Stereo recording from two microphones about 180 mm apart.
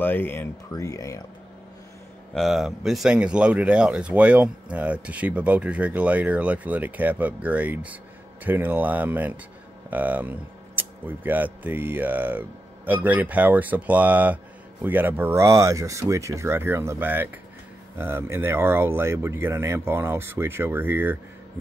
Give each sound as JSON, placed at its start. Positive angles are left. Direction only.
{"t": 0.0, "sound": "speech", "side_deg": 10}
{"t": 2.3, "sound": "speech", "side_deg": 0}